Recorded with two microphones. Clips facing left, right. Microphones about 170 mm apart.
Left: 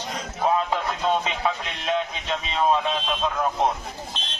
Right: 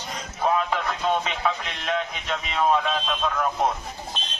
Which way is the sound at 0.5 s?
30° left (ahead or behind).